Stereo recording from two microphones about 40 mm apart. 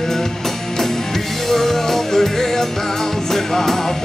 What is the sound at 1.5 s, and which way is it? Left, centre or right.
Music, centre.